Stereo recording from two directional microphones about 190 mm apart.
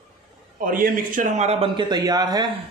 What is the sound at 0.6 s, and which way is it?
Speech, 45° right (ahead or behind).